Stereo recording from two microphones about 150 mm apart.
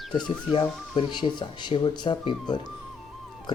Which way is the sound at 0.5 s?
30° left (ahead or behind).